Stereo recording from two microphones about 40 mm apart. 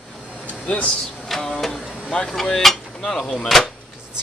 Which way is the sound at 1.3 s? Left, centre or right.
Centre.